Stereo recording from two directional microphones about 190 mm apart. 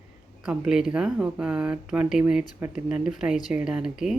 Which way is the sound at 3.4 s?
5° right (ahead or behind).